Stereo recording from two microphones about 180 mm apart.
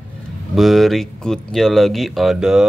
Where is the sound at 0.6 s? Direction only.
Centre (ahead or behind).